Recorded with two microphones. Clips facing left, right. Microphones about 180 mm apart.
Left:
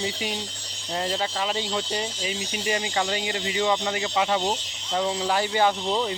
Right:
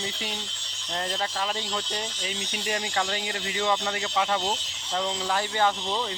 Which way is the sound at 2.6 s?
5° left (ahead or behind).